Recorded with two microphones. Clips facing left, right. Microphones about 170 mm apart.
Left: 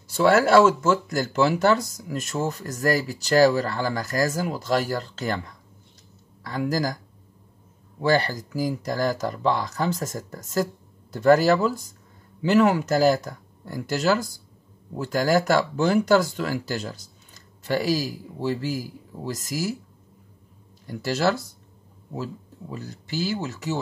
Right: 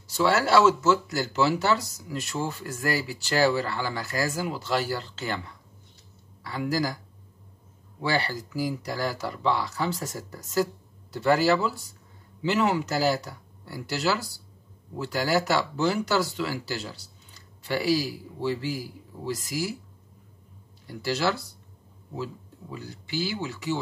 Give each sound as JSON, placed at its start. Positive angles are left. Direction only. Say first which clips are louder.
{"t": 0.1, "sound": "speech", "louder": "left 5 dB", "side_deg": 50}
{"t": 6.4, "sound": "speech", "louder": "left 2 dB", "side_deg": 45}
{"t": 8.0, "sound": "speech", "louder": "left 6 dB", "side_deg": 45}
{"t": 20.8, "sound": "speech", "louder": "left 3 dB", "side_deg": 50}